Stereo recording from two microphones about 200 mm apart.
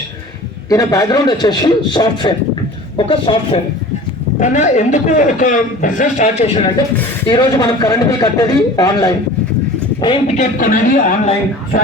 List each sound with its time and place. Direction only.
0.7 s a man's voice: 15° left (ahead or behind)
4.4 s a man's voice: 40° left (ahead or behind)
7.3 s a man's voice: 20° left (ahead or behind); by 11.0 s 45° left (ahead or behind)